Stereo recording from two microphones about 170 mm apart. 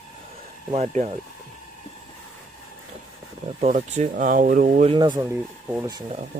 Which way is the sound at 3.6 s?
45° right (ahead or behind).